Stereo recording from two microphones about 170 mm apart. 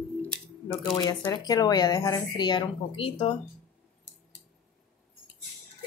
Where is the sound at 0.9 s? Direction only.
25° left (ahead or behind).